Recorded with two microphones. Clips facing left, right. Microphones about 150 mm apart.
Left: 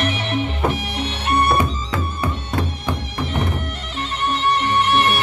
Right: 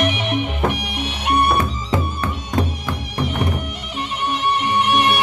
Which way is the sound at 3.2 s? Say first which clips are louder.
Right 3 dB; 10° right (ahead or behind).